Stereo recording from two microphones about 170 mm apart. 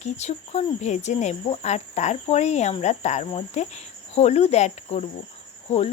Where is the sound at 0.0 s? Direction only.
40° left (ahead or behind).